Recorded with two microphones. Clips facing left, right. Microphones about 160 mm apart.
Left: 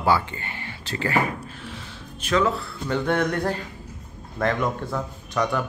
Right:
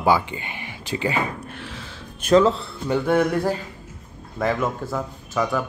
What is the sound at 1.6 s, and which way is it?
Music, 90° right.